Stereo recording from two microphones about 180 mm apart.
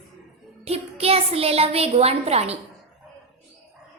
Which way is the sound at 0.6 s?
35° right (ahead or behind).